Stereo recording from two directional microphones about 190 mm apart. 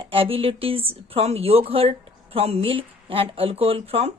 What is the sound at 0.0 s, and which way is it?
A woman's voice, 30° right (ahead or behind).